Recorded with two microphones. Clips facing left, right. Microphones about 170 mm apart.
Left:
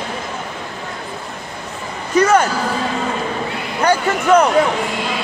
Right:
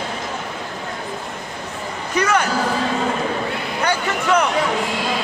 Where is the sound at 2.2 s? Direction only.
45° left (ahead or behind).